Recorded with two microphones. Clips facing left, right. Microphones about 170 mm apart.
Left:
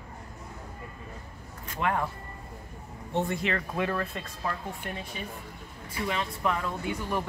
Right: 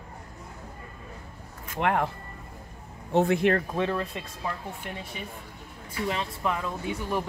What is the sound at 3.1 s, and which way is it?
Speech, 80° right.